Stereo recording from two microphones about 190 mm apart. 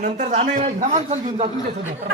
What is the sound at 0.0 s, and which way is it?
A man's voice, 40° right (ahead or behind).